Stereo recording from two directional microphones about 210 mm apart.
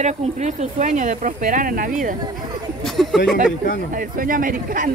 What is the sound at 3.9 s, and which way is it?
Speech, 40° right (ahead or behind).